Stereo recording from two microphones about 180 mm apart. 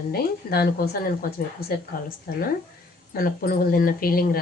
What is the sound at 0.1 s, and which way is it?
Speech, 60° left (ahead or behind).